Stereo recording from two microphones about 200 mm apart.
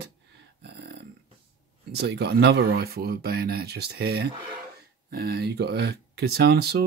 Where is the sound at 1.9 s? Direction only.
55° right (ahead or behind).